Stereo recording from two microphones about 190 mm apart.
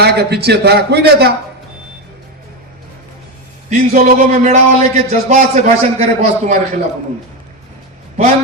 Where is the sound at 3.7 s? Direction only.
40° right (ahead or behind).